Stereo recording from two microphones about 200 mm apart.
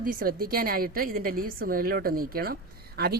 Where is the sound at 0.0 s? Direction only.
45° right (ahead or behind).